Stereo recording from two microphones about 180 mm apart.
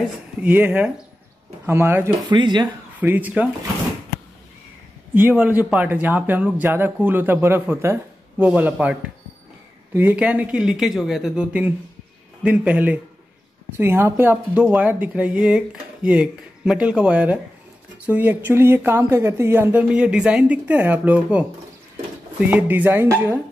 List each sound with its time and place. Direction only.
0.4 s speech: 10° right (ahead or behind)
2.2 s speech: 25° right (ahead or behind)
3.0 s speech: 10° right (ahead or behind)
5.1 s speech: 10° right (ahead or behind)
9.9 s speech: 10° right (ahead or behind)